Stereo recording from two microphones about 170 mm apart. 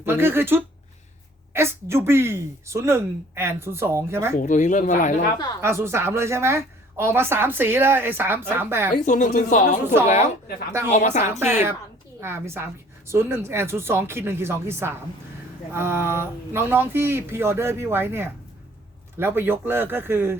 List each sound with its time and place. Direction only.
0.0 s a woman's voice: 15° right (ahead or behind)
4.4 s speech: 50° left (ahead or behind)
5.6 s a woman's voice: 15° right (ahead or behind)
9.0 s a woman's voice: 50° left (ahead or behind)
11.2 s a woman's voice: 15° right (ahead or behind)